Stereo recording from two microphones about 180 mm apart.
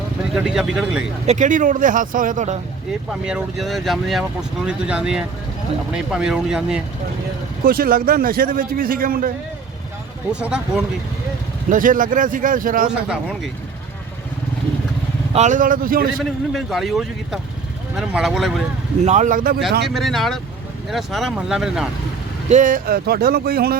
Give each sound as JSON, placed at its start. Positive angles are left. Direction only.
{"t": 0.3, "sound": "speech", "side_deg": -5}
{"t": 1.3, "sound": "a man's voice", "side_deg": -45}
{"t": 3.1, "sound": "speech", "side_deg": 0}
{"t": 7.6, "sound": "a man's voice", "side_deg": -55}
{"t": 11.7, "sound": "a man's voice", "side_deg": -50}
{"t": 12.9, "sound": "speech", "side_deg": -5}
{"t": 15.3, "sound": "a man's voice", "side_deg": -40}
{"t": 16.1, "sound": "speech", "side_deg": 0}
{"t": 19.0, "sound": "a man's voice", "side_deg": -40}
{"t": 19.9, "sound": "speech", "side_deg": 0}
{"t": 22.4, "sound": "speech", "side_deg": -45}